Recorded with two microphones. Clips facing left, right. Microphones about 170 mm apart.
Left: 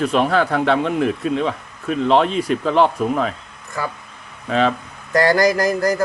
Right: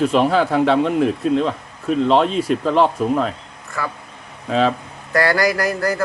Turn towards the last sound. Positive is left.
turn(degrees=20)  # may be behind; listen again after turning